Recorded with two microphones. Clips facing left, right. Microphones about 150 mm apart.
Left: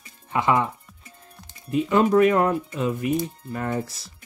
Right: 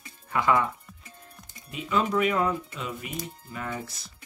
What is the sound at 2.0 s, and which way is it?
Speech, 45° left (ahead or behind).